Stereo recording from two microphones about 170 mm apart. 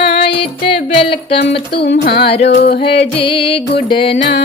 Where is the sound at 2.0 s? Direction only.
65° left (ahead or behind).